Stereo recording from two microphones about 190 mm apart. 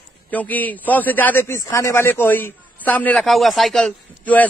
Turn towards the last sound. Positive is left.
turn(degrees=5)  # may be behind; listen again after turning